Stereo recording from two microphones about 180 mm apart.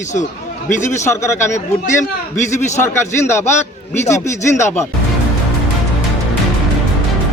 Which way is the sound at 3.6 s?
40° left (ahead or behind).